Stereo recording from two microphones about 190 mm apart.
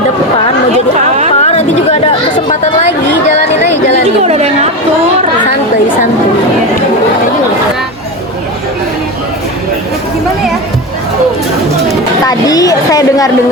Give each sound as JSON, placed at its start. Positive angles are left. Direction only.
{"t": 1.4, "sound": "chatter", "side_deg": 35}
{"t": 4.2, "sound": "chatter", "side_deg": -35}
{"t": 12.2, "sound": "a woman's voice", "side_deg": 20}